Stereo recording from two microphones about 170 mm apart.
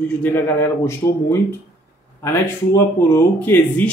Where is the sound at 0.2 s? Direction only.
15° left (ahead or behind).